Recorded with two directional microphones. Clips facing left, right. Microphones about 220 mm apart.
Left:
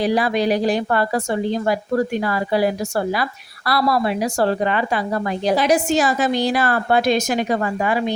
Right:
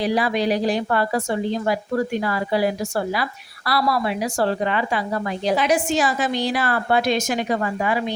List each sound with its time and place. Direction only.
0.0 s a woman's voice: 45° left (ahead or behind)
2.2 s a woman's voice: 45° left (ahead or behind)
3.7 s a woman's voice: 45° left (ahead or behind)